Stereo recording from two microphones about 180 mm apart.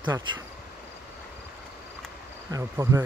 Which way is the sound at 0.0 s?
25° right (ahead or behind).